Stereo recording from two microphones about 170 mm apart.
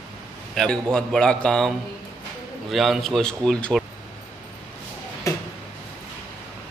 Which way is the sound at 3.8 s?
Centre (ahead or behind).